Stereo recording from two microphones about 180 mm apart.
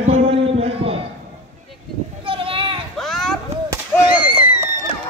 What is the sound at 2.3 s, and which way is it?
Children playing, 30° right (ahead or behind).